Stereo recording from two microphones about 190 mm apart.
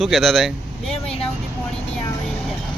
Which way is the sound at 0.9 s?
30° left (ahead or behind).